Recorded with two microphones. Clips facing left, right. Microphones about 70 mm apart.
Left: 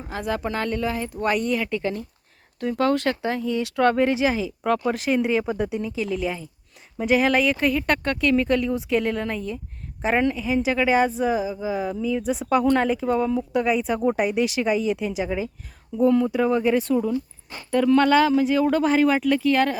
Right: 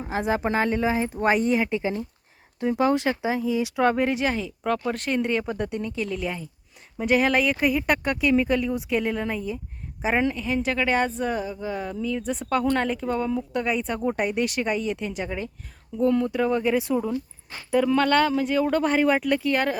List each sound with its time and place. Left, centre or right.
0.1 s a woman's voice: right; by 19.7 s centre